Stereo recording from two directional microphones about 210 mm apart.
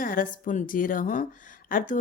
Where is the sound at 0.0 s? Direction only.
40° left (ahead or behind).